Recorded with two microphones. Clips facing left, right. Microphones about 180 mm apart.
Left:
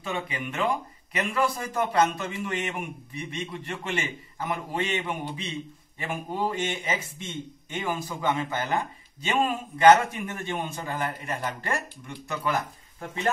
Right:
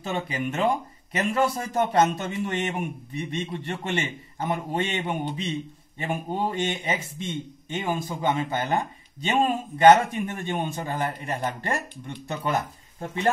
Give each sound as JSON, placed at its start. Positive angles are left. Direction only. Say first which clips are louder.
{"t": 0.1, "sound": "a man's voice", "louder": "right 4 dB", "side_deg": -30}
{"t": 11.0, "sound": "a man's voice", "louder": "right 2 dB", "side_deg": -30}